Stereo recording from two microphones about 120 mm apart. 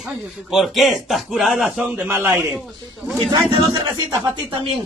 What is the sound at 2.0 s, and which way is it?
Speech, 20° right (ahead or behind).